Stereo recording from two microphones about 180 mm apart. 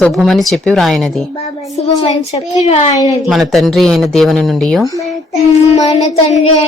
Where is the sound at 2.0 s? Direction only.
35° left (ahead or behind).